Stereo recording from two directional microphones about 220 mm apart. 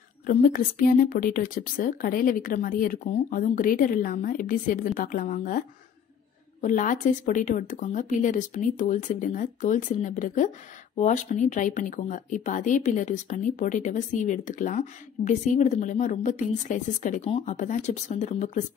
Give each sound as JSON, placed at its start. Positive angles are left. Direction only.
{"t": 0.3, "sound": "speech", "side_deg": 40}